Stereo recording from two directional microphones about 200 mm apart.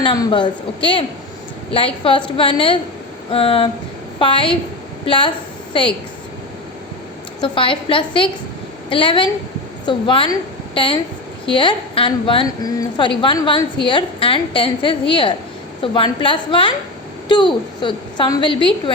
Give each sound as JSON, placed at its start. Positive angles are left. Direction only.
{"t": 0.0, "sound": "a woman's voice", "side_deg": 20}
{"t": 7.4, "sound": "a woman's voice", "side_deg": 25}